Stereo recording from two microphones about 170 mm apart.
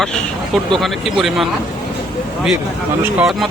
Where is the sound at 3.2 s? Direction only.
Centre (ahead or behind).